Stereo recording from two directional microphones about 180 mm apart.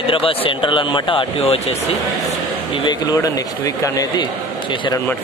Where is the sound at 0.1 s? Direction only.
30° left (ahead or behind).